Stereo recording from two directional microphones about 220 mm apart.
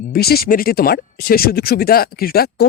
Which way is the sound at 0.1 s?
45° left (ahead or behind).